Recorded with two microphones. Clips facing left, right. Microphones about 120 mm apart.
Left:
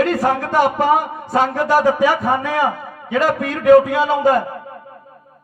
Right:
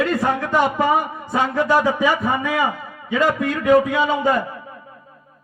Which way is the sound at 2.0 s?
35° left (ahead or behind).